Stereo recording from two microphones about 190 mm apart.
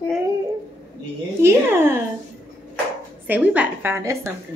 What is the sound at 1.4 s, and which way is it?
Speech, 10° right (ahead or behind).